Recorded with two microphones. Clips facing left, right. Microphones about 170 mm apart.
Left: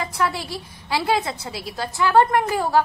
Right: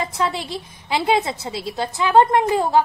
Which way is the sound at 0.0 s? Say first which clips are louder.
Right 1 dB; 20° right (ahead or behind).